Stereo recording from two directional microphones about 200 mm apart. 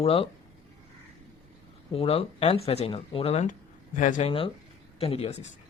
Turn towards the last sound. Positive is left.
turn(degrees=30)  # may be behind; listen again after turning